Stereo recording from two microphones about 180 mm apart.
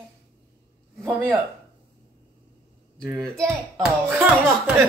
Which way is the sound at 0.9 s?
15° right (ahead or behind).